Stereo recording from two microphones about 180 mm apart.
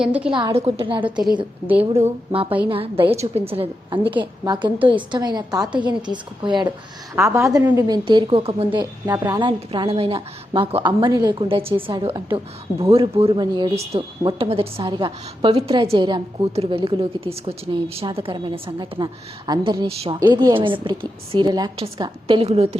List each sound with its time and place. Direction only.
0.0 s a woman's voice: 5° right (ahead or behind)
0.3 s a woman's voice: 30° right (ahead or behind)
1.6 s a woman's voice: 10° right (ahead or behind)
1.9 s a woman's voice: 35° right (ahead or behind); by 7.9 s 15° right (ahead or behind)
8.0 s a woman's voice: 30° right (ahead or behind)